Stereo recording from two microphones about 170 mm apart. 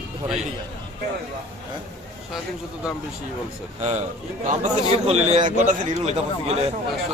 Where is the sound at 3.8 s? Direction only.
45° right (ahead or behind).